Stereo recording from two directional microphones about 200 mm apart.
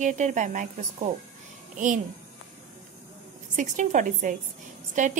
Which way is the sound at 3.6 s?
40° right (ahead or behind).